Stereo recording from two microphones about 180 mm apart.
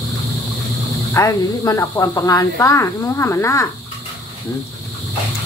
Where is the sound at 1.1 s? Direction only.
15° left (ahead or behind).